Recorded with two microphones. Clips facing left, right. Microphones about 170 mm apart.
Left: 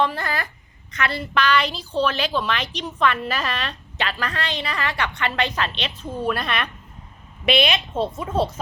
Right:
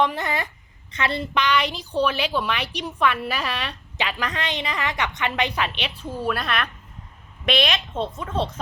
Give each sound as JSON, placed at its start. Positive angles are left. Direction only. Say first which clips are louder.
{"t": 0.0, "sound": "a woman's voice", "louder": "even", "side_deg": -20}